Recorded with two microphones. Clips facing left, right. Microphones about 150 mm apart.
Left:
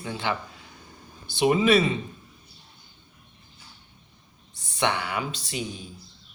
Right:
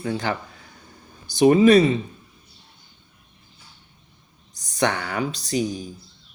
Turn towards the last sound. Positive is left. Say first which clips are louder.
# right 9 dB
turn(degrees=-40)  # may be behind; listen again after turning